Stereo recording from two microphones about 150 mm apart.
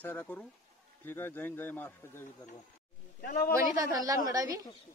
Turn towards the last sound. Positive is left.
turn(degrees=-25)  # may be behind; listen again after turning